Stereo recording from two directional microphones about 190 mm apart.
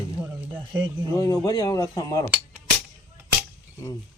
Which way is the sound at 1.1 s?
20° left (ahead or behind).